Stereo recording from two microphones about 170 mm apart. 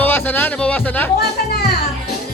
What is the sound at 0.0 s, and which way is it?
Speech, 10° left (ahead or behind).